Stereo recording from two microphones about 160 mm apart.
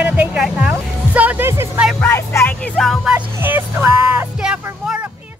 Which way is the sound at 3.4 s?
15° right (ahead or behind).